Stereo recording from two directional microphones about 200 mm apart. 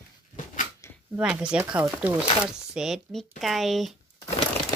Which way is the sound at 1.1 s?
5° right (ahead or behind).